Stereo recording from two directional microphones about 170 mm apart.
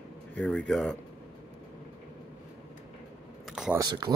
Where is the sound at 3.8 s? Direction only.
25° right (ahead or behind).